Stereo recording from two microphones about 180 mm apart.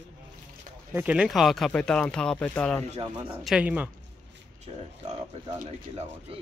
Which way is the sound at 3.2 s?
5° right (ahead or behind).